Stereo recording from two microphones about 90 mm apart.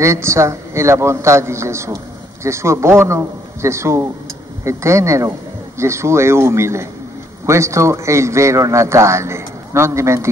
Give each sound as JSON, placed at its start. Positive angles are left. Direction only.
{"t": 0.0, "sound": "a man's voice", "side_deg": -30}